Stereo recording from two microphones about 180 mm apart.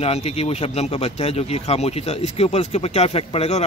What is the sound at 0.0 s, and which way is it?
Speech, 35° left (ahead or behind).